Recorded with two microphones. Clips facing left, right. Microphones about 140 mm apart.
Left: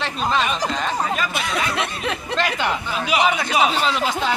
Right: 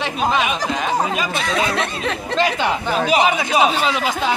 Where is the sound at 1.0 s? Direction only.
20° right (ahead or behind).